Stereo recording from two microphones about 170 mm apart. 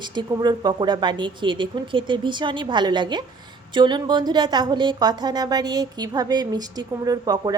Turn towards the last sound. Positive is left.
turn(degrees=-25)  # may be behind; listen again after turning